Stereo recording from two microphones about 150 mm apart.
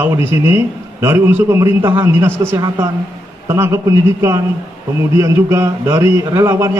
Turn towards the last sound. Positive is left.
turn(degrees=-20)  # may be behind; listen again after turning